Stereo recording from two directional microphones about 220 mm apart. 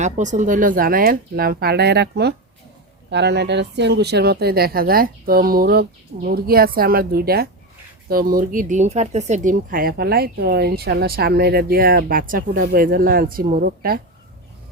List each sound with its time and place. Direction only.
0.0 s speech: 35° right (ahead or behind)